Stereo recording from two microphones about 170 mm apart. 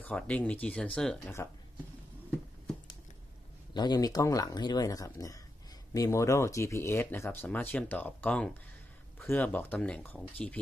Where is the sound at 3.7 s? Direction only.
25° left (ahead or behind).